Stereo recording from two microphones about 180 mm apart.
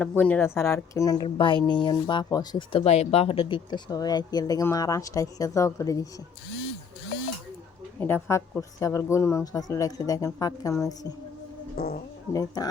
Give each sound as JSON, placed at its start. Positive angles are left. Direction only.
{"t": 0.0, "sound": "speech", "side_deg": 10}
{"t": 7.9, "sound": "speech", "side_deg": 10}
{"t": 11.8, "sound": "speech", "side_deg": 55}
{"t": 12.3, "sound": "speech", "side_deg": 20}